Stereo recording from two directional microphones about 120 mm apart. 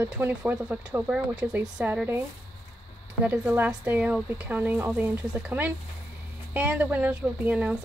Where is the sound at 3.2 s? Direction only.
15° right (ahead or behind).